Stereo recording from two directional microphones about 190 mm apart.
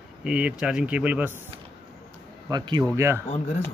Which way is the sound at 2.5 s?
20° right (ahead or behind).